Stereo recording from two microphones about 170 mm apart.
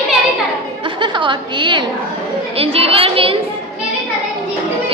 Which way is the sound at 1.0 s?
30° right (ahead or behind).